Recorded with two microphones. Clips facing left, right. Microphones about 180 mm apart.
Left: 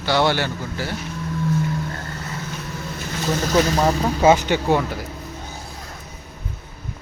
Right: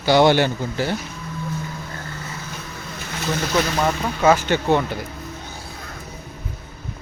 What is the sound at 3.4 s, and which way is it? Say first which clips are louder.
Speech: left 3 dB; 40° left (ahead or behind).